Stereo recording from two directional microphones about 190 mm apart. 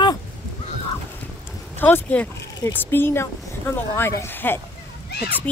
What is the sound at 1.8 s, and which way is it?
Speech, 10° left (ahead or behind).